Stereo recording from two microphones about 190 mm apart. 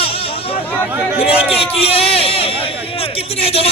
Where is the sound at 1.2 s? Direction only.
30° left (ahead or behind).